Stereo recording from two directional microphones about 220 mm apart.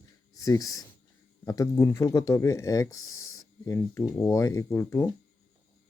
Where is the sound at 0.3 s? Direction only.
15° left (ahead or behind).